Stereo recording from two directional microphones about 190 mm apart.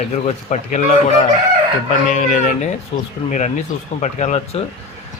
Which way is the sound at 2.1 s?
40° left (ahead or behind).